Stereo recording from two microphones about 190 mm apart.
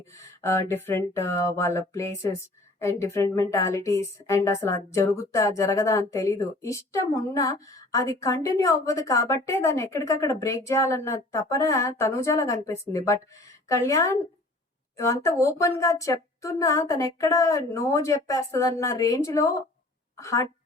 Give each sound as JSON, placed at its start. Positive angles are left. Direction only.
{"t": 0.4, "sound": "a woman's voice", "side_deg": 15}